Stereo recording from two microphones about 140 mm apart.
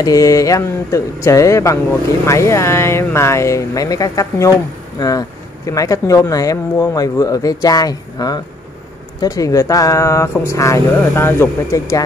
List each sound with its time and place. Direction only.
0.0 s speech: 25° left (ahead or behind)